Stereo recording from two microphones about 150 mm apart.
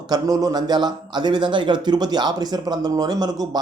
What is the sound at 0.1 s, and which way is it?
A man's voice, 25° right (ahead or behind).